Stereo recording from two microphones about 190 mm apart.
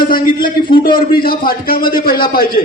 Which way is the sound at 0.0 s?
50° left (ahead or behind).